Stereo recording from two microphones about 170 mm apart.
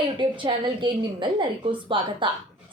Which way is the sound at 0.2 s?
30° right (ahead or behind).